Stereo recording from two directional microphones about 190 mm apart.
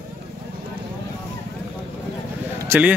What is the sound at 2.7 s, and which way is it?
Speech, 10° right (ahead or behind).